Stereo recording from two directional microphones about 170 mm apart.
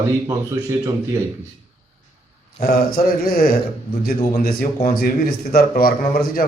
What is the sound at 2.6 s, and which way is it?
A man's voice, 65° left (ahead or behind).